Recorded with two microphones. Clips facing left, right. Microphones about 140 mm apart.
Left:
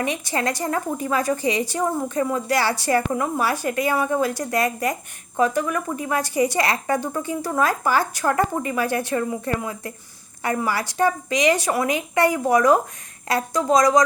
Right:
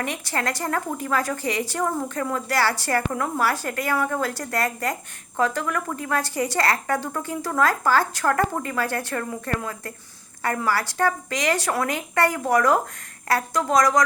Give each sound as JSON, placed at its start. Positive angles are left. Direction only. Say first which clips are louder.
{"t": 0.0, "sound": "a woman's voice", "louder": "left 3 dB", "side_deg": 15}